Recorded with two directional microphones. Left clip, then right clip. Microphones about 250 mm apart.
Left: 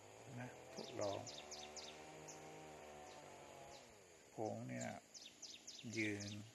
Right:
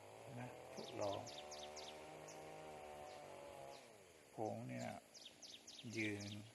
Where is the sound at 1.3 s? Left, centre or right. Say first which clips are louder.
Right 1 dB; right.